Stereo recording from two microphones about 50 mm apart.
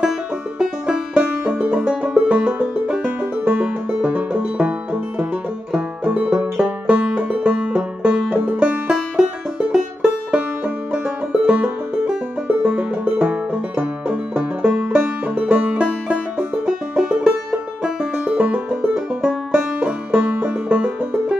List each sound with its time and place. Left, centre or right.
0.6 s music: centre
5.8 s banjo: right
6.9 s music: right
10.9 s music: right
18.9 s banjo: centre